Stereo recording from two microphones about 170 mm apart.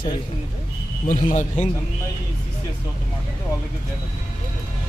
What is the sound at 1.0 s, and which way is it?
Speech, 45° left (ahead or behind).